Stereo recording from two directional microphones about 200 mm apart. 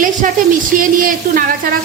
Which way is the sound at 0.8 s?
45° right (ahead or behind).